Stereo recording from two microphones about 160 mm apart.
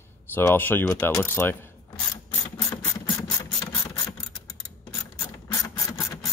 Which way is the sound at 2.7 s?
25° left (ahead or behind).